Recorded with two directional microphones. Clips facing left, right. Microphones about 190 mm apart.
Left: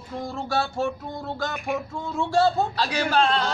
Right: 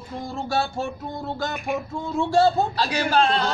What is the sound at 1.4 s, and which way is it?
A man's voice, 15° right (ahead or behind).